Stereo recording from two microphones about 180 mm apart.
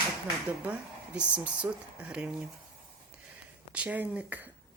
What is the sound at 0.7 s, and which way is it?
Speech, 5° right (ahead or behind).